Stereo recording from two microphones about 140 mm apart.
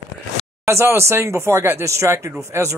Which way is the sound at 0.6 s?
20° right (ahead or behind).